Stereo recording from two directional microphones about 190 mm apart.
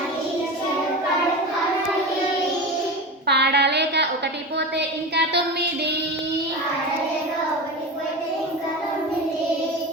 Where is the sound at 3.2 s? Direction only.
60° right (ahead or behind).